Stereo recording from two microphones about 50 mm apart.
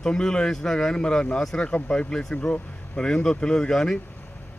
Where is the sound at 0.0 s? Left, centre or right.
Centre.